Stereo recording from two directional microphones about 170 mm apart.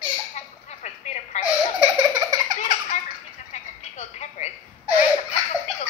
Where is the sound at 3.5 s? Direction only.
40° left (ahead or behind).